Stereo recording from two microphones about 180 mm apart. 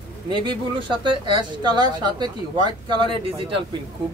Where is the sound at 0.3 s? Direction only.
25° right (ahead or behind).